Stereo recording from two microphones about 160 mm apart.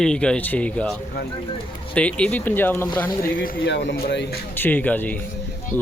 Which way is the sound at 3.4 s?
80° left.